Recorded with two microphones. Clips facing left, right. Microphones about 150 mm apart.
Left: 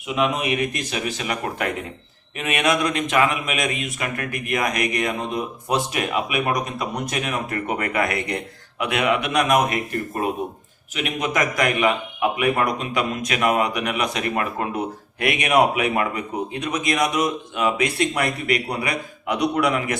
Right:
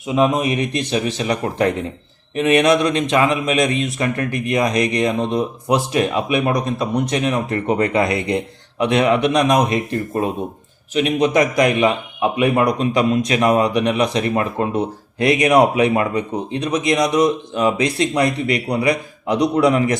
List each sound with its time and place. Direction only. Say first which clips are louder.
0.1 s a man's voice: right 5 dB; 35° right (ahead or behind)